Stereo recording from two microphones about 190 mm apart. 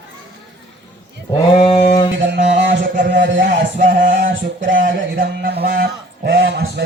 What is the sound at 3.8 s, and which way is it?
Music, 45° right (ahead or behind).